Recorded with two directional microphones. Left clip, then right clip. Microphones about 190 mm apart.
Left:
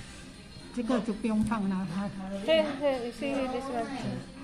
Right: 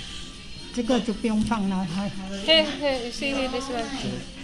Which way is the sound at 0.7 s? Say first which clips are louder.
Right 6 dB; 30° right (ahead or behind).